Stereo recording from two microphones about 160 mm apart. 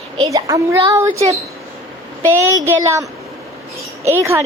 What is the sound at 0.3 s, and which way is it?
A woman's voice, 20° right (ahead or behind).